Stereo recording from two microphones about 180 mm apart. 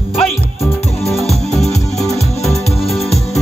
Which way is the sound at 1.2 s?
35° left (ahead or behind).